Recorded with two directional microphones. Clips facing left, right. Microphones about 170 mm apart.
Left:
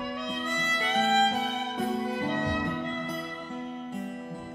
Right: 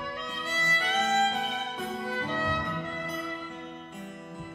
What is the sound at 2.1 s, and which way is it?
Music, 20° left (ahead or behind).